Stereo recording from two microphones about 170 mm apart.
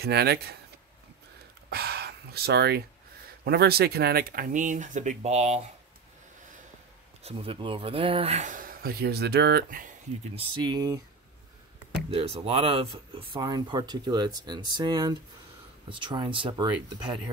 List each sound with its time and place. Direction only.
0.0 s speech: 70° right (ahead or behind)
1.7 s gasp: 65° right (ahead or behind)
3.4 s speech: 65° right (ahead or behind); by 5.6 s 40° right (ahead or behind)
7.2 s speech: 35° right (ahead or behind); by 9.8 s 60° right (ahead or behind)
10.3 s speech: 25° right (ahead or behind)
12.1 s speech: 35° right (ahead or behind)